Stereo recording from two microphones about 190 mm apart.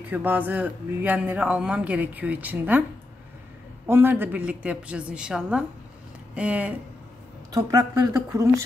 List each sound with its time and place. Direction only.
0.1 s a man's voice: 10° right (ahead or behind)
3.8 s a man's voice: 10° right (ahead or behind)
7.5 s a man's voice: 20° right (ahead or behind)